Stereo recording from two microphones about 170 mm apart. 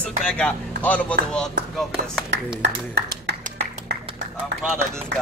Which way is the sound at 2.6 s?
80° right.